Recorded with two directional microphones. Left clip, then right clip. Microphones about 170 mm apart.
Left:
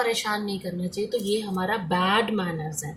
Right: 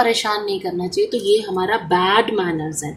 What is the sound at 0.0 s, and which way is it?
A woman's voice, 35° right (ahead or behind).